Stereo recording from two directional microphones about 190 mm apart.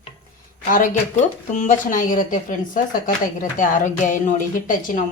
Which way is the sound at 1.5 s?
40° left (ahead or behind).